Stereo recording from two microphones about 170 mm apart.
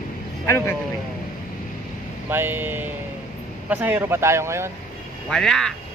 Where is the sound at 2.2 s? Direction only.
10° right (ahead or behind).